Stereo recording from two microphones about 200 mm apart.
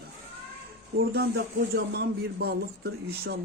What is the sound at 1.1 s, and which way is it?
Speech, 50° right (ahead or behind).